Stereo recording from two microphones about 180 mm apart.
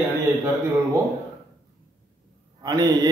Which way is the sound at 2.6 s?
20° right (ahead or behind).